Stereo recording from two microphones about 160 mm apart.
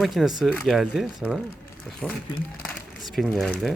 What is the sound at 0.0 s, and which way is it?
Speech, centre (ahead or behind).